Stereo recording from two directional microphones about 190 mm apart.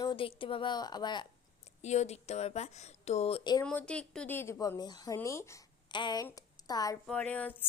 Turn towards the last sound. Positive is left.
turn(degrees=10)  # may be behind; listen again after turning